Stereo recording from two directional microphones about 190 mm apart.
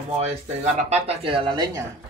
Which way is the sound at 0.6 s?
35° right (ahead or behind).